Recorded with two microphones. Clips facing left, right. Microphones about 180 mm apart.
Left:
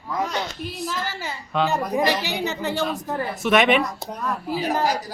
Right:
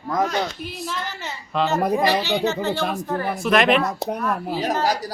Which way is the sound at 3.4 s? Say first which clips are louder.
Even; centre (ahead or behind).